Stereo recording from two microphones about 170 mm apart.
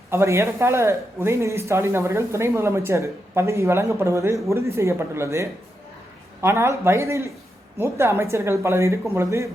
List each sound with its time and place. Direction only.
0.1 s speech: 15° right (ahead or behind)